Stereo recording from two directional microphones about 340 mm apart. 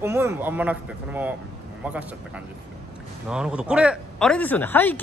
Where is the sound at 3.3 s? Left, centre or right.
Centre.